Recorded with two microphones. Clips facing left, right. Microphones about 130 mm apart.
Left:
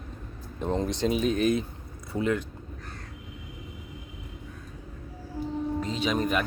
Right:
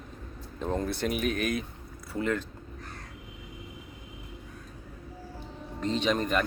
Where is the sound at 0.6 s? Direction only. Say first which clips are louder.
Left 3 dB; 20° left (ahead or behind).